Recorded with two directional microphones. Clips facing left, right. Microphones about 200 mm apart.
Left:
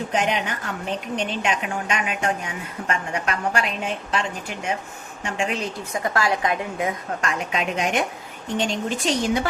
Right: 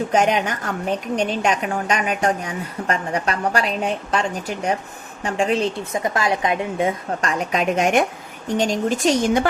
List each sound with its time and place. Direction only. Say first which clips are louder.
0.1 s a woman's voice: right 5 dB; 45° right (ahead or behind)